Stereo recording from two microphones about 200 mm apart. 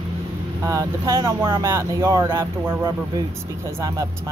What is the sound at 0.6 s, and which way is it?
Speech, 15° right (ahead or behind).